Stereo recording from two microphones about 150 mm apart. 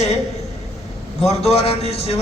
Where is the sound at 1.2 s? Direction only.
45° left (ahead or behind).